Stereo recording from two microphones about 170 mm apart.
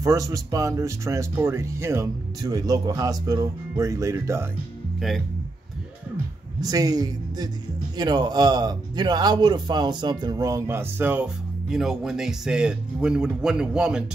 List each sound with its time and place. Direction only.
0.0 s speech: 20° right (ahead or behind)
6.6 s speech: 20° right (ahead or behind); by 14.0 s 5° right (ahead or behind)